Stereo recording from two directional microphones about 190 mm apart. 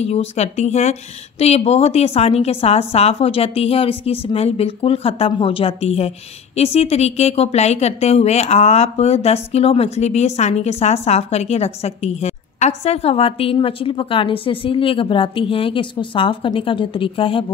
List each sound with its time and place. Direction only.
0.0 s a woman's voice: 35° left (ahead or behind)